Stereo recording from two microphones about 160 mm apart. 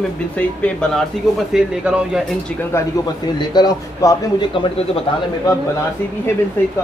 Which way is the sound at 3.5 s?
20° left (ahead or behind).